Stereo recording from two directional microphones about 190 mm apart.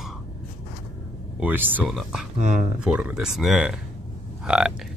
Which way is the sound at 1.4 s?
10° right (ahead or behind).